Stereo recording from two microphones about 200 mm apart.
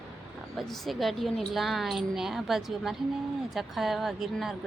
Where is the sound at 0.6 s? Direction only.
Centre (ahead or behind).